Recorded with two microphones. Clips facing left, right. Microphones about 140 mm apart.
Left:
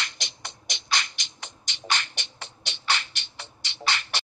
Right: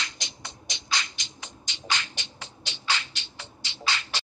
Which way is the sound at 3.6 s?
65° left (ahead or behind).